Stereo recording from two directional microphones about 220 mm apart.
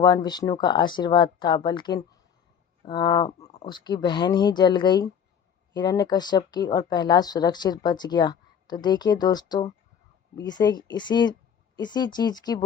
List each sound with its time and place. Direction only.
0.0 s speech: 20° left (ahead or behind)
2.8 s a sound: 20° left (ahead or behind)
3.5 s speech: 25° left (ahead or behind)